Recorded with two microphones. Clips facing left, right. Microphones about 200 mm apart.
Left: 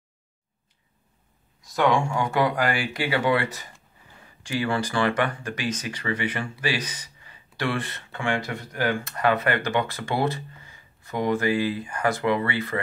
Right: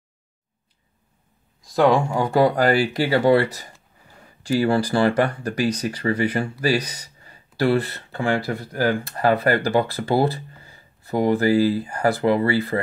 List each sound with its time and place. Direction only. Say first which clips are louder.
1.8 s speech: right 4 dB; 35° right (ahead or behind)